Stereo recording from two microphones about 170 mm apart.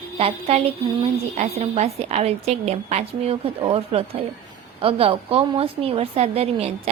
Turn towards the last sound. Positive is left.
turn(degrees=-35)  # may be behind; listen again after turning